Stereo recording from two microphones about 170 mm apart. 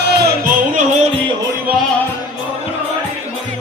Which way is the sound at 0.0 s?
75° right (ahead or behind).